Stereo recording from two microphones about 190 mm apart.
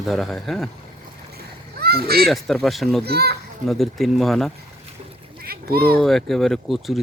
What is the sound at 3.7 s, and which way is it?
Speech, centre (ahead or behind).